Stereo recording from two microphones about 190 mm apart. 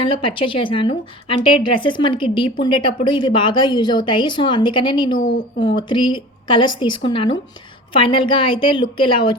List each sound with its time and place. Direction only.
0.0 s a woman's voice: 25° left (ahead or behind)